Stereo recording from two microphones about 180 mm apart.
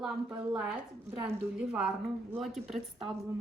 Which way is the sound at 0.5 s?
5° right (ahead or behind).